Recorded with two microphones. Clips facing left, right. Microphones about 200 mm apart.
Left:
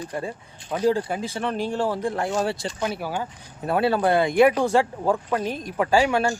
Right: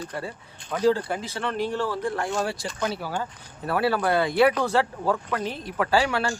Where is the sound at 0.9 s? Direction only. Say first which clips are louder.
Even; 15° left (ahead or behind).